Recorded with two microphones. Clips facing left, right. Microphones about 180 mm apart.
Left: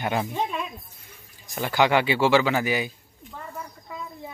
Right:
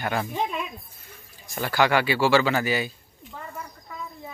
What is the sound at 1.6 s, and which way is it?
Speech, 20° left (ahead or behind).